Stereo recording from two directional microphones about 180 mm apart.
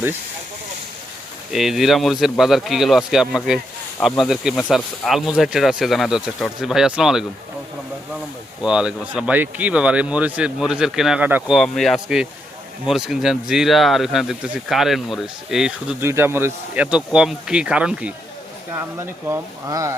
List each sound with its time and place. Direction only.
1.5 s speech: centre (ahead or behind)
8.6 s speech: 5° right (ahead or behind)
18.7 s speech: 15° right (ahead or behind)